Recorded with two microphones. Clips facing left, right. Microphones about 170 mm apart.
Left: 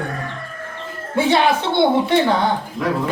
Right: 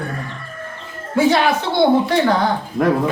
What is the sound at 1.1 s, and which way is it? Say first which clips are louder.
A woman's voice: right 1 dB; 25° left (ahead or behind).